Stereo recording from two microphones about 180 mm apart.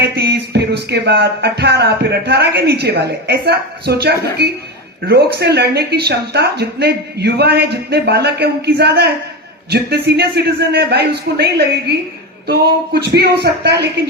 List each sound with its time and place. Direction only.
0.0 s music: 65° right (ahead or behind)